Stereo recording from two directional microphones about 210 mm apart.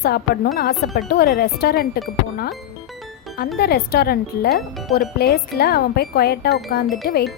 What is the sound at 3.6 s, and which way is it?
Speech, 50° left (ahead or behind).